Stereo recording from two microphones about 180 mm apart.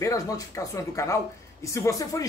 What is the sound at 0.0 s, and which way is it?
Speech, 20° left (ahead or behind).